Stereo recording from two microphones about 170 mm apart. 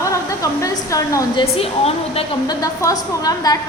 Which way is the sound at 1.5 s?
35° left (ahead or behind).